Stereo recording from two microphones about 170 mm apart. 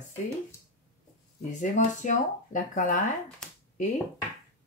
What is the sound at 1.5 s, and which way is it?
Speech, 45° left (ahead or behind).